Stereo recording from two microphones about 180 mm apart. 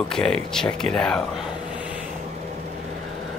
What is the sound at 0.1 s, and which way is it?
Speech, 5° left (ahead or behind).